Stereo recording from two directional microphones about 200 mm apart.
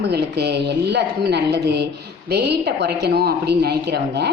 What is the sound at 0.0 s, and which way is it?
A woman's voice, 55° right (ahead or behind).